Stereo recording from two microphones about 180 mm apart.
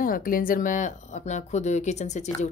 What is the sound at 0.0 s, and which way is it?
A woman's voice, 50° left (ahead or behind).